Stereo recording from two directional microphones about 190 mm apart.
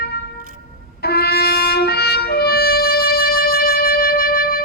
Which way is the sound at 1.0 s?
55° left (ahead or behind).